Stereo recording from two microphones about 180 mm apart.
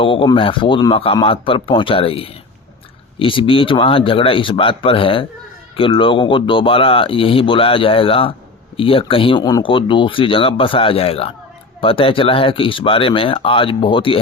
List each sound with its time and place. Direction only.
0.0 s speech: 30° left (ahead or behind)